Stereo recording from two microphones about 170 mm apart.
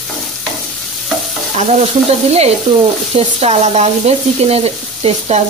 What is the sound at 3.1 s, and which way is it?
Sizzle, 35° right (ahead or behind).